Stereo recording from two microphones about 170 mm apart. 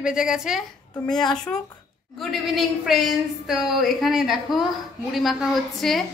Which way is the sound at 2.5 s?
Centre (ahead or behind).